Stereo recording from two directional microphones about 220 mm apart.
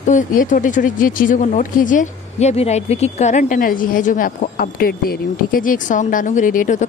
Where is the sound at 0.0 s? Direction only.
35° left (ahead or behind).